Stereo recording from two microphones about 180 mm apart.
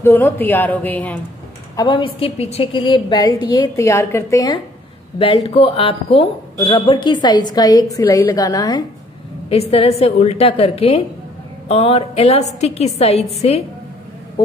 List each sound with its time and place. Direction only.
0.0 s a woman's voice: 15° left (ahead or behind)
1.8 s a woman's voice: 25° left (ahead or behind)
3.8 s a woman's voice: 15° left (ahead or behind)
5.5 s a woman's voice: 30° left (ahead or behind)
9.5 s a woman's voice: 35° left (ahead or behind)